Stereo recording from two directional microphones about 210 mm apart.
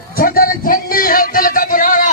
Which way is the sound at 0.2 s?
40° left (ahead or behind).